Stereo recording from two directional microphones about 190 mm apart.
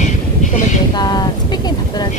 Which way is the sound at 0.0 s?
40° left (ahead or behind).